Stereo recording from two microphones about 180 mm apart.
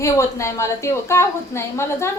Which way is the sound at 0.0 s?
15° left (ahead or behind).